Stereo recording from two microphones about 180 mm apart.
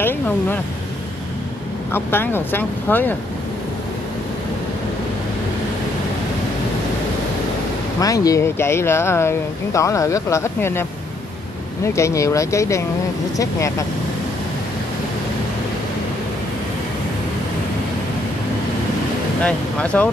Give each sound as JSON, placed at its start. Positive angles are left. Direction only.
{"t": 1.9, "sound": "speech", "side_deg": 10}
{"t": 8.0, "sound": "speech", "side_deg": 20}
{"t": 19.4, "sound": "speech", "side_deg": 5}